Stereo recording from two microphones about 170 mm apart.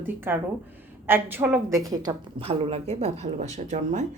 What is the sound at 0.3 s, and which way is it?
A woman's voice, 10° right (ahead or behind).